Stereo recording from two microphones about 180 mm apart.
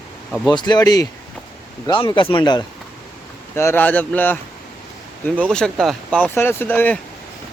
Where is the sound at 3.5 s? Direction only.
15° left (ahead or behind).